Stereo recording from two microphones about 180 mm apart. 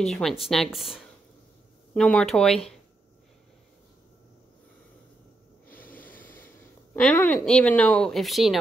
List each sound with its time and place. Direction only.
0.0 s speech: centre (ahead or behind)
5.9 s a sound: 50° left (ahead or behind)
7.0 s speech: 10° left (ahead or behind)